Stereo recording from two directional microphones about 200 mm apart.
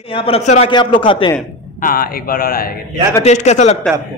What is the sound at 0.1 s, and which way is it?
A man's voice, 30° left (ahead or behind).